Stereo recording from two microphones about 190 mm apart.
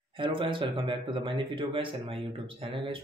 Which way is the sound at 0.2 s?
25° right (ahead or behind).